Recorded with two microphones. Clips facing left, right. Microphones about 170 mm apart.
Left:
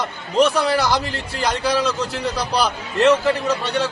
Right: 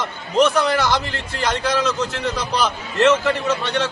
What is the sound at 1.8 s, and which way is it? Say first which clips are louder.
A man's voice: even; 35° left (ahead or behind).